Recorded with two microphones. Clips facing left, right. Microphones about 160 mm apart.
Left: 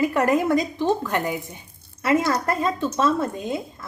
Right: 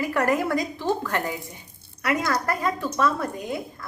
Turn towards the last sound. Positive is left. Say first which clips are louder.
# left 4 dB
turn(degrees=25)  # may be behind; listen again after turning